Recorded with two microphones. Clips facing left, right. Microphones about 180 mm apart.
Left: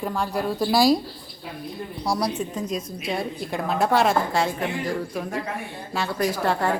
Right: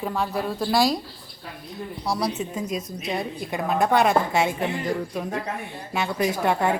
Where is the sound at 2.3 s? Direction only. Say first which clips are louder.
Left 1 dB; 5° right (ahead or behind).